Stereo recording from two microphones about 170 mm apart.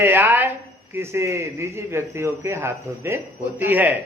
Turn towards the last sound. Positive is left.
turn(degrees=-10)  # may be behind; listen again after turning